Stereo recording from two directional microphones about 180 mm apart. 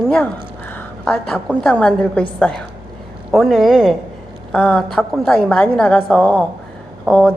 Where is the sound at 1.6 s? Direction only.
5° left (ahead or behind).